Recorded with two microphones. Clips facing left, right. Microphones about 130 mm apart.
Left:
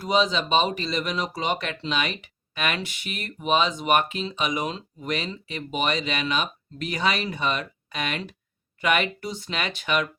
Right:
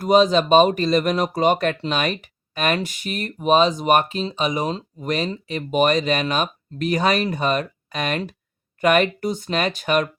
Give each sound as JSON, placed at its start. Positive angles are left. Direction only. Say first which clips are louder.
{"t": 0.0, "sound": "speech", "louder": "right 7 dB", "side_deg": -50}